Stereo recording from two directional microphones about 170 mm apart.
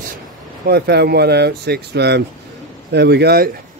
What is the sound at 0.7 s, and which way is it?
Speech, 70° right (ahead or behind).